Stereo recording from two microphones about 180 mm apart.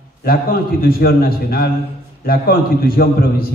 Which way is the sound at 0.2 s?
55° left (ahead or behind).